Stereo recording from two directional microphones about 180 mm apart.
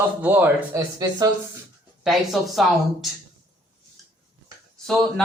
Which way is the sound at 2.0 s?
Centre (ahead or behind).